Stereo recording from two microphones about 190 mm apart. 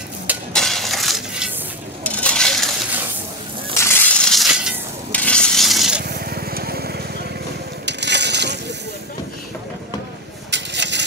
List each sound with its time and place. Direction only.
0.5 s crushing: centre (ahead or behind)
2.0 s coin: 5° left (ahead or behind)
3.7 s crushing: 15° left (ahead or behind); by 4.7 s 5° right (ahead or behind)
5.1 s stir: 5° left (ahead or behind)
6.0 s vehicle: 55° right (ahead or behind)
7.8 s a sound: 65° right (ahead or behind)
10.5 s a sound: 65° right (ahead or behind)